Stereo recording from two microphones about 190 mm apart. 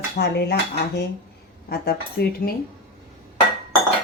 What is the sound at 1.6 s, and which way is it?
Speech, 55° left (ahead or behind).